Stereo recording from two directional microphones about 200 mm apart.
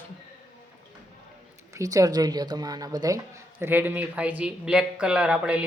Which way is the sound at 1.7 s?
15° right (ahead or behind).